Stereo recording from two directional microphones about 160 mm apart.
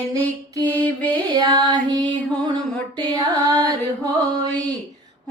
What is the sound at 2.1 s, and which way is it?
Music, 25° right (ahead or behind).